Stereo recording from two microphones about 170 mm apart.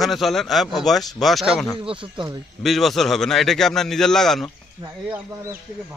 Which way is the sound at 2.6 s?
Centre (ahead or behind).